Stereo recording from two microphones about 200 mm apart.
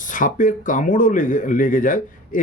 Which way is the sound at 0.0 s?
40° left (ahead or behind).